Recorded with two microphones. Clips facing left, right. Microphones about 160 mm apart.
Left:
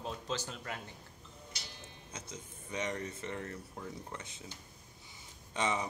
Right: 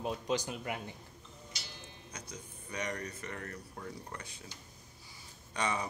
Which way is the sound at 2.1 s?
25° left (ahead or behind).